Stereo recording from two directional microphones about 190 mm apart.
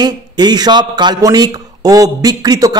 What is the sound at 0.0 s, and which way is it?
A man's voice, 20° right (ahead or behind).